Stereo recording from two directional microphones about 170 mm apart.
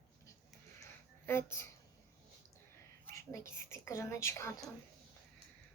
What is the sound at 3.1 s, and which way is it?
Whispering, 15° left (ahead or behind).